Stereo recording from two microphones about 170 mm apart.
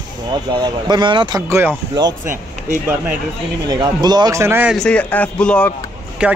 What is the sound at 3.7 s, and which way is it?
Speech, 20° right (ahead or behind).